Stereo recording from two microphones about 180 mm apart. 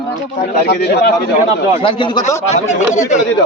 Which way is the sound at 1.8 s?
30° left (ahead or behind).